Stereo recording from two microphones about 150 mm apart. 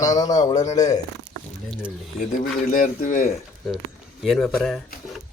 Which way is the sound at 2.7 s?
60° left (ahead or behind).